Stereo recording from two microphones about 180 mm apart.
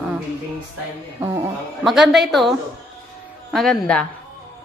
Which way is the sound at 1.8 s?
Centre (ahead or behind).